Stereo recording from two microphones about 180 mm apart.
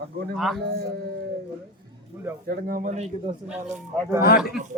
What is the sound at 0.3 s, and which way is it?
Speech, centre (ahead or behind).